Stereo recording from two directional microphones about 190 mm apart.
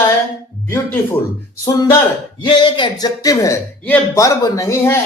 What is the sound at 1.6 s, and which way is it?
A man's voice, 20° left (ahead or behind).